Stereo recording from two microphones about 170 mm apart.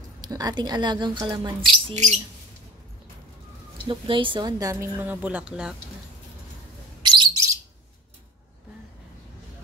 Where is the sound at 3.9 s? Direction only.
30° right (ahead or behind); by 5.8 s 5° right (ahead or behind).